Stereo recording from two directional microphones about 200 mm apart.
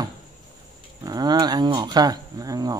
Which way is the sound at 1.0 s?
20° right (ahead or behind).